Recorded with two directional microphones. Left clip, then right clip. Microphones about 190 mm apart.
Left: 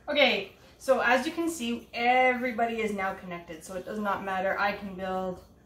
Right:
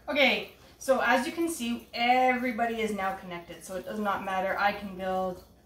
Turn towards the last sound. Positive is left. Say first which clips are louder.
# right 2 dB
turn(degrees=15)  # may be behind; listen again after turning